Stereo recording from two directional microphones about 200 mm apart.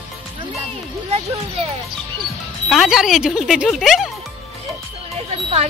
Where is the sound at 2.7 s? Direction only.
Centre (ahead or behind).